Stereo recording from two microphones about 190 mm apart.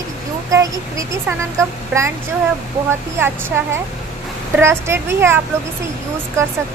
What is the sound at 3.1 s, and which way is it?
Speech, 10° right (ahead or behind).